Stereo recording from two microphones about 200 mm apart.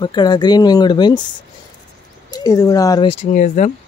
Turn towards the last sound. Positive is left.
turn(degrees=40)  # may be behind; listen again after turning